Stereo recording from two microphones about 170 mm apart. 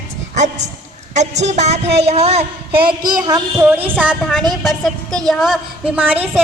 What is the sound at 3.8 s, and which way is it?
A woman's voice, 5° right (ahead or behind).